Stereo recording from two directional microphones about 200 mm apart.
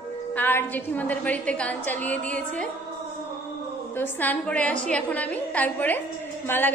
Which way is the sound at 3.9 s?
10° left (ahead or behind).